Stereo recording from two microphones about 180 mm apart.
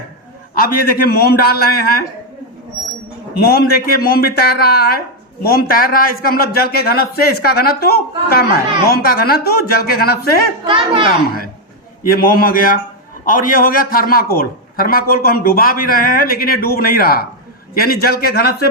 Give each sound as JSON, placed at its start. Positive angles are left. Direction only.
{"t": 0.5, "sound": "speech", "side_deg": 55}
{"t": 3.3, "sound": "speech", "side_deg": 60}
{"t": 12.1, "sound": "a man's voice", "side_deg": 55}